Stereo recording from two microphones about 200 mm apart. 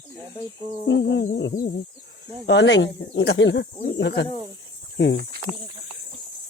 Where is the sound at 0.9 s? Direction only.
65° left (ahead or behind).